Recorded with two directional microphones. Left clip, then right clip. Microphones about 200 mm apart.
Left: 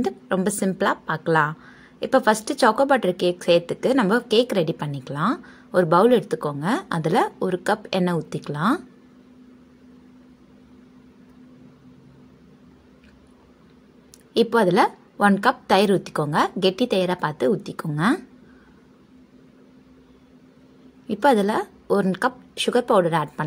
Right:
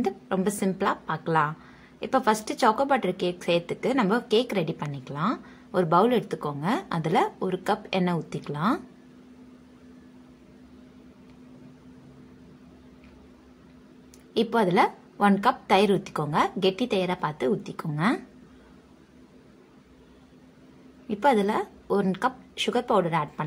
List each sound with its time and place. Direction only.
0.0 s a woman's voice: 25° left (ahead or behind)
14.3 s a woman's voice: 25° left (ahead or behind)
21.1 s a woman's voice: 25° left (ahead or behind)